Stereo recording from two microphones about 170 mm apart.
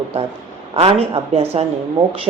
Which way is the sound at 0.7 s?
35° right (ahead or behind).